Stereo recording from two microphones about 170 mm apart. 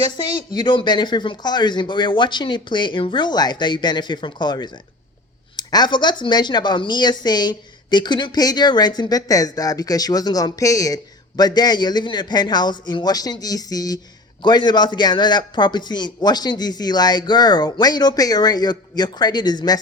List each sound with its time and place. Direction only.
0.2 s speech: 25° left (ahead or behind)